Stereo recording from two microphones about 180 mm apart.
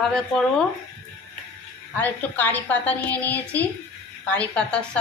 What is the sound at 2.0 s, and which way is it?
A woman's voice, 10° left (ahead or behind).